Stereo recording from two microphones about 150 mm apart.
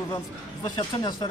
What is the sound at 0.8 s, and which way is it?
Speech, 30° left (ahead or behind).